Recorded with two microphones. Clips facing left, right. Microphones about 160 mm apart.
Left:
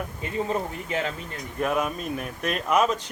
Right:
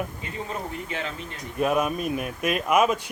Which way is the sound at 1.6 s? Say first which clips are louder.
Right 3 dB; 15° right (ahead or behind).